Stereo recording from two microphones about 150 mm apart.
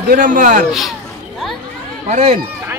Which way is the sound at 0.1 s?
65° right (ahead or behind).